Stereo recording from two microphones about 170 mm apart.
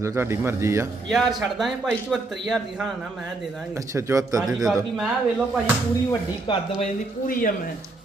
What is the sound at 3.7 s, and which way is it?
Speech, 15° right (ahead or behind).